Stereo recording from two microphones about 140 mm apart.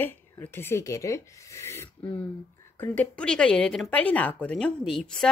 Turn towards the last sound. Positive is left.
turn(degrees=5)  # may be behind; listen again after turning